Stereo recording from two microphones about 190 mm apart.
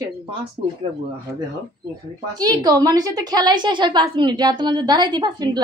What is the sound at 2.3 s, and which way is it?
A woman's voice, 20° right (ahead or behind).